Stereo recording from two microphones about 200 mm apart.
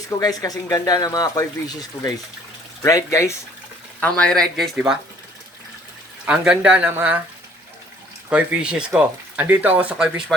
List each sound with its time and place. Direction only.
0.1 s speech: 20° left (ahead or behind)
4.0 s speech: 5° left (ahead or behind)
6.2 s speech: 5° right (ahead or behind)
8.3 s speech: 5° right (ahead or behind)